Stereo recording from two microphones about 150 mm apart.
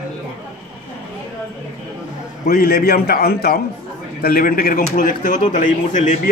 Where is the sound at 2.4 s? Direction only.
90° left.